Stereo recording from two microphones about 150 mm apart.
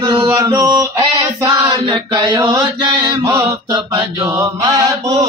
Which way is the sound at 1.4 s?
20° right (ahead or behind).